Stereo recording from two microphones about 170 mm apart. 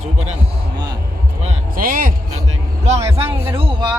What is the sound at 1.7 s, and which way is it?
Music, 55° right (ahead or behind).